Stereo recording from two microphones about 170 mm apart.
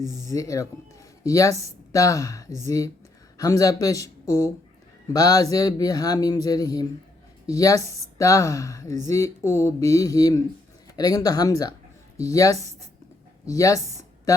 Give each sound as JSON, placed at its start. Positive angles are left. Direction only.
{"t": 0.3, "sound": "speech", "side_deg": 20}